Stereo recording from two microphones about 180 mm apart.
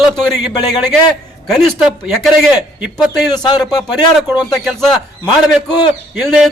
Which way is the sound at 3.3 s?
25° left (ahead or behind).